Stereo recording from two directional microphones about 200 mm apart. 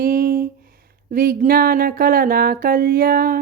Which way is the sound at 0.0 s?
45° right (ahead or behind).